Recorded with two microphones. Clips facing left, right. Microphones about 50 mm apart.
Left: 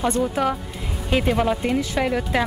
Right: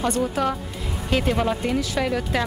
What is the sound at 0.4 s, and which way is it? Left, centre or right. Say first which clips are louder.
Speech: left 1 dB; left.